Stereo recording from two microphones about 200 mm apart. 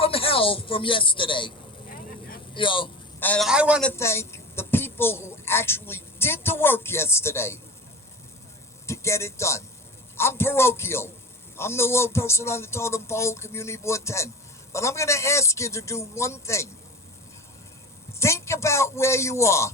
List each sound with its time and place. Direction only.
0.0 s speech: 25° left (ahead or behind)
2.6 s a man's voice: 25° left (ahead or behind)
3.2 s a man's voice: 5° left (ahead or behind)
3.8 s a woman's voice: 15° left (ahead or behind)
8.9 s a woman's voice: 15° left (ahead or behind)
18.2 s a woman's voice: 15° left (ahead or behind)